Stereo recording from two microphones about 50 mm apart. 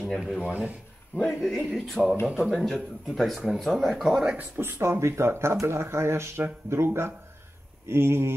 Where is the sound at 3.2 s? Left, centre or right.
Centre.